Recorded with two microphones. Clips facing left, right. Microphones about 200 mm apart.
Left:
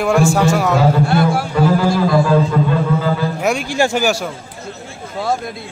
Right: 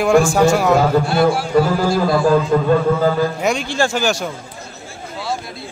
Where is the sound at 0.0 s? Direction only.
5° left (ahead or behind).